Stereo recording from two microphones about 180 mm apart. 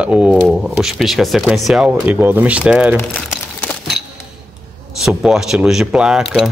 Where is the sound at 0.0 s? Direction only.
5° right (ahead or behind).